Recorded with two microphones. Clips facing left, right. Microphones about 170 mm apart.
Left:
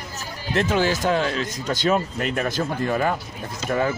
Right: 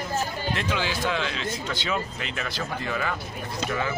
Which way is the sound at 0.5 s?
45° left (ahead or behind).